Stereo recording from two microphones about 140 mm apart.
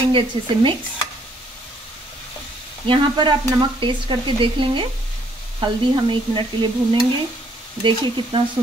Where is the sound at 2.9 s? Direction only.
35° right (ahead or behind).